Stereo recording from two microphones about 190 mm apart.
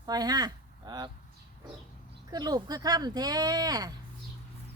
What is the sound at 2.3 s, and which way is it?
Speech, 20° right (ahead or behind).